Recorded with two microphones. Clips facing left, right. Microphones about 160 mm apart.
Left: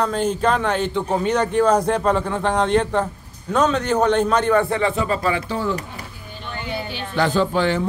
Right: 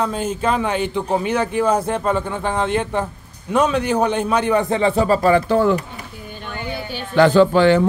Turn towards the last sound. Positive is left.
turn(degrees=-75)  # may be behind; listen again after turning